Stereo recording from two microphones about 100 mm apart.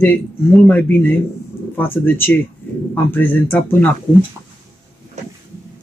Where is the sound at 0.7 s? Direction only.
20° left (ahead or behind).